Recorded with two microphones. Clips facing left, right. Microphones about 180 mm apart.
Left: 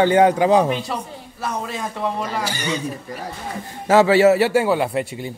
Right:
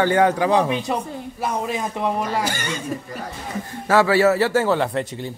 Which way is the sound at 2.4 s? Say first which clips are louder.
Left 1 dB; 50° right (ahead or behind).